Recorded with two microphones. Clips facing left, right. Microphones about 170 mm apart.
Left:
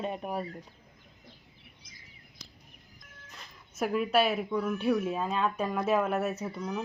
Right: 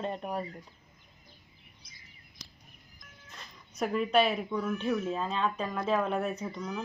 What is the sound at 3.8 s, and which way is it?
Speech, 5° left (ahead or behind).